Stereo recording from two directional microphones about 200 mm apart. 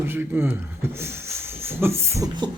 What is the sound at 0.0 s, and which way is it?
Speech, 10° right (ahead or behind).